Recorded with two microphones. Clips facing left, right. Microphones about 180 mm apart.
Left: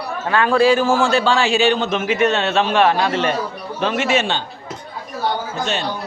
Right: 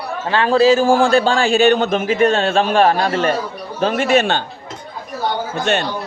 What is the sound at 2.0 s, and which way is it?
Speech, 30° right (ahead or behind).